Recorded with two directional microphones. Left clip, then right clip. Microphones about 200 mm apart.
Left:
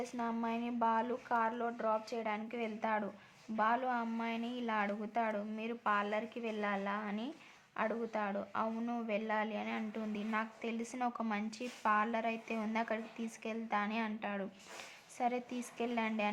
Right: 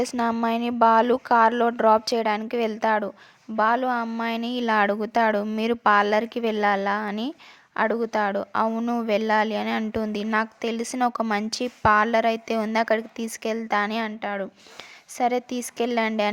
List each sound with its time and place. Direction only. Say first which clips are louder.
0.0 s speech: right 15 dB; 45° right (ahead or behind)